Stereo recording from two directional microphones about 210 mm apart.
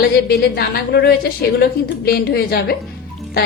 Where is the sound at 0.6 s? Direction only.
50° left (ahead or behind).